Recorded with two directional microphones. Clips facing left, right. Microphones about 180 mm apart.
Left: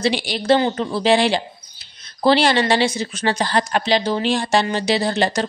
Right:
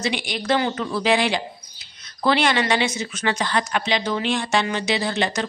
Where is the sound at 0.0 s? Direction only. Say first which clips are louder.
Left 5 dB; 30° left (ahead or behind).